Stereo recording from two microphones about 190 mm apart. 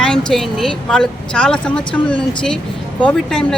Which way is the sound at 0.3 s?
Centre (ahead or behind).